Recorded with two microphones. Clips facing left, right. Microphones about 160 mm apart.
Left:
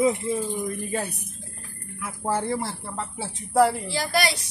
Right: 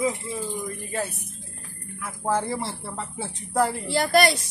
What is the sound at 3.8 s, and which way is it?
Speech, 55° right (ahead or behind).